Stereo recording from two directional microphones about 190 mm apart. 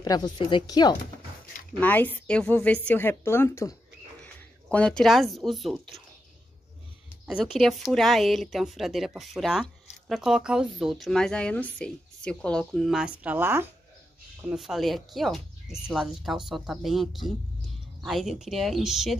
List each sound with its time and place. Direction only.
0.0 s speech: 20° left (ahead or behind)
1.8 s a woman's voice: 10° left (ahead or behind)
7.2 s speech: 5° right (ahead or behind)